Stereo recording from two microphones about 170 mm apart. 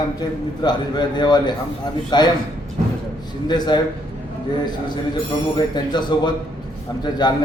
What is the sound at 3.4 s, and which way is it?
Speech, 25° left (ahead or behind).